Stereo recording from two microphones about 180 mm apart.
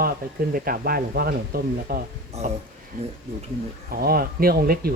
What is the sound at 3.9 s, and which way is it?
Speech, 55° right (ahead or behind).